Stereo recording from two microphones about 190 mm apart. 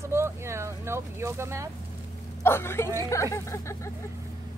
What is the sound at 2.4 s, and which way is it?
Speech, 15° left (ahead or behind).